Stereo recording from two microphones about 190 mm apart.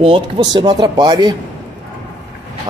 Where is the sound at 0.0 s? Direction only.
25° right (ahead or behind).